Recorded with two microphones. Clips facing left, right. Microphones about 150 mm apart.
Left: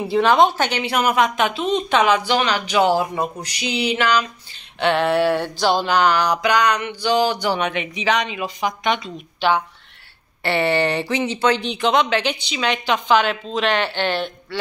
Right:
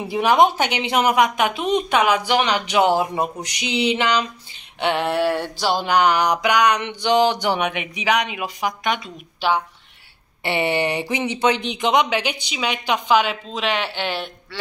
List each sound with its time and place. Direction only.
0.1 s a woman's voice: 15° right (ahead or behind)
10.4 s a woman's voice: 15° right (ahead or behind)